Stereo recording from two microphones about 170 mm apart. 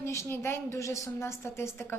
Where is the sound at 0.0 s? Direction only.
15° left (ahead or behind).